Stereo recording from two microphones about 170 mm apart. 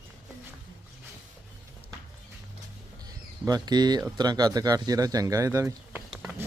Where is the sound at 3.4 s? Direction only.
25° right (ahead or behind).